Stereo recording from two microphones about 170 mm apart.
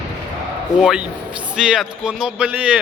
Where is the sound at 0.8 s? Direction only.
5° right (ahead or behind).